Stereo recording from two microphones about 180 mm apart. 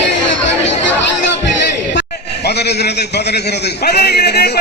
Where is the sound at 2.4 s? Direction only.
65° left (ahead or behind).